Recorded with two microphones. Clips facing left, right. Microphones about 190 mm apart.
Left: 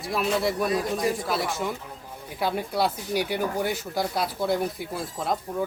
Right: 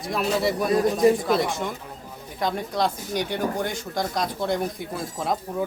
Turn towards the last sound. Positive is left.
turn(degrees=5)  # may be behind; listen again after turning